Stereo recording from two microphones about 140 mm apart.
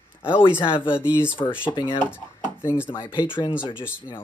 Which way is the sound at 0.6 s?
40° left (ahead or behind).